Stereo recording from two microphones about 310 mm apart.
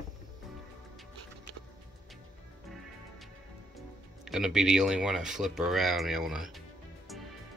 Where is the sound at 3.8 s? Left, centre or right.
Centre.